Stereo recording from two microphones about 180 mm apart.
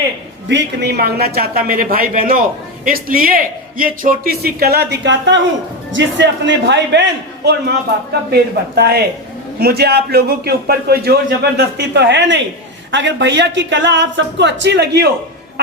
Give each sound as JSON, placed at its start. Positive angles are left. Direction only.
{"t": 0.4, "sound": "a man's voice", "side_deg": -70}
{"t": 5.9, "sound": "a man's voice", "side_deg": -85}
{"t": 12.9, "sound": "speech", "side_deg": -85}